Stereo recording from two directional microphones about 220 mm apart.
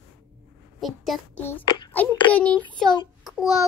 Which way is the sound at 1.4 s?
10° left (ahead or behind).